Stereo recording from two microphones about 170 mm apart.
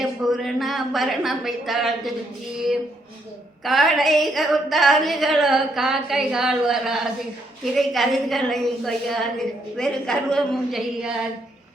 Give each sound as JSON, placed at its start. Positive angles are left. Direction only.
{"t": 0.0, "sound": "a woman's voice", "side_deg": 0}
{"t": 3.6, "sound": "a woman's voice", "side_deg": 0}